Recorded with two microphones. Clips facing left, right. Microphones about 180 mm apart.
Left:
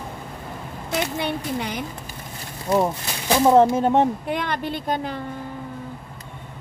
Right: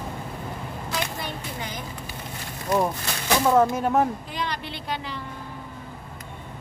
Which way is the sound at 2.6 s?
25° left (ahead or behind).